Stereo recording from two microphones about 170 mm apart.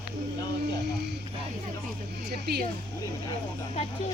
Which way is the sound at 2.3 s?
70° right (ahead or behind).